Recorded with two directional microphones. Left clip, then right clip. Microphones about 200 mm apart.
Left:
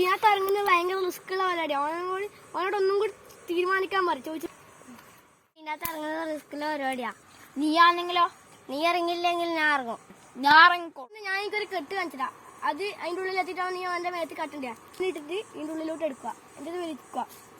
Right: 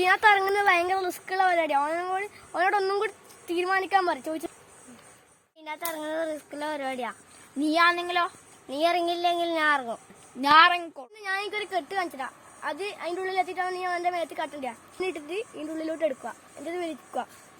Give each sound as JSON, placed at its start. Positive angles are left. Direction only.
{"t": 0.1, "sound": "a woman's voice", "side_deg": -20}
{"t": 5.6, "sound": "speech", "side_deg": -5}
{"t": 7.6, "sound": "a child's voice", "side_deg": -15}
{"t": 8.7, "sound": "a woman's voice", "side_deg": 0}
{"t": 15.0, "sound": "a woman's voice", "side_deg": -25}